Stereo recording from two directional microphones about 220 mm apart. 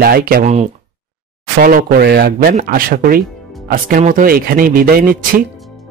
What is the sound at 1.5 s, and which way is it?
Speech, 40° right (ahead or behind).